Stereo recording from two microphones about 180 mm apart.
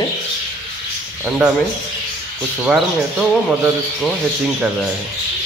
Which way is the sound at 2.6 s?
5° right (ahead or behind).